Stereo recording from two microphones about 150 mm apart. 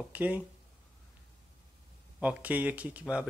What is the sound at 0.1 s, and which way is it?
Speech, 10° right (ahead or behind).